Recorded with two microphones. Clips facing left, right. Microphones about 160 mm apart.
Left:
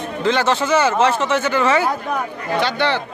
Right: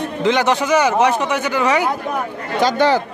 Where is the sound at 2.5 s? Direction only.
40° right (ahead or behind).